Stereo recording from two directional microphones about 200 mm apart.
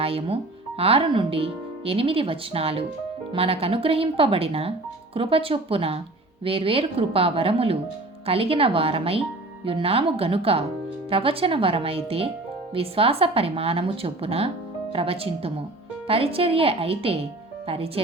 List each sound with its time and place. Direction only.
0.0 s speech: 30° right (ahead or behind)